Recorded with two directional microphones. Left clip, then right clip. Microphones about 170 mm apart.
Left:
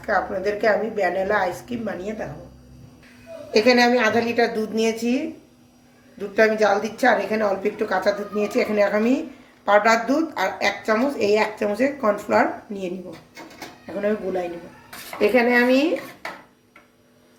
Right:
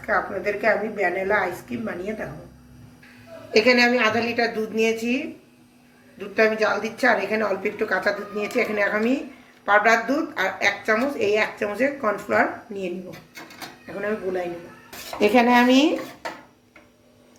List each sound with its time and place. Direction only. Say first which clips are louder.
0.0 s a woman's voice: left 1 dB; 30° left (ahead or behind)
3.5 s a woman's voice: left 1 dB; 30° left (ahead or behind)
13.8 s speech: left 3 dB; 40° left (ahead or behind)
15.2 s speech: even; 20° right (ahead or behind)